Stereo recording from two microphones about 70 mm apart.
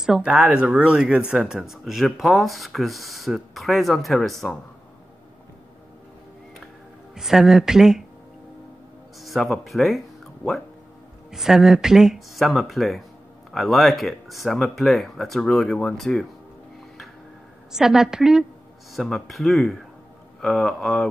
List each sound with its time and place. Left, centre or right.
0.0 s speech: centre
7.2 s speech: centre
9.2 s speech: centre
17.7 s speech: centre